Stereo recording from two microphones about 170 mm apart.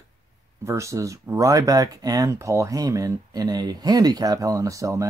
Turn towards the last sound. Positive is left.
turn(degrees=-20)  # may be behind; listen again after turning